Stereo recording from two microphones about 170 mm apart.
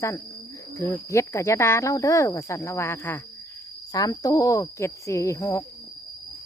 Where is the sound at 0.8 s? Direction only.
15° left (ahead or behind).